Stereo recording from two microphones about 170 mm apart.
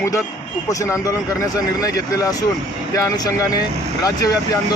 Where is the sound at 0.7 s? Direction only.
20° left (ahead or behind).